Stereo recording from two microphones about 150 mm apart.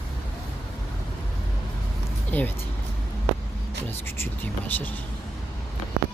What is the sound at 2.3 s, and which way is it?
Speech, 10° left (ahead or behind).